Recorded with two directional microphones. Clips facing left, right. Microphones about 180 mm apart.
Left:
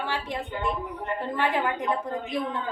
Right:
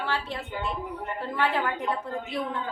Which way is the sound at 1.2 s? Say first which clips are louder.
Left 1 dB; 15° left (ahead or behind).